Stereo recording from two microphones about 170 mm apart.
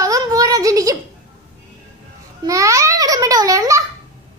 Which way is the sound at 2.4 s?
20° right (ahead or behind).